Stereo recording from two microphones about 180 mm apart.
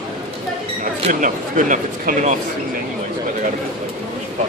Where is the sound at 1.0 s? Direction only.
45° right (ahead or behind).